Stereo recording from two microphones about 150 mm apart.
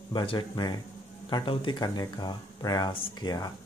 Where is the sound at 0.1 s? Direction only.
35° left (ahead or behind).